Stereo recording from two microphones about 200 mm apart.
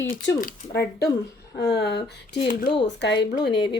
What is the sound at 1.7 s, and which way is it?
A woman's voice, 55° left (ahead or behind).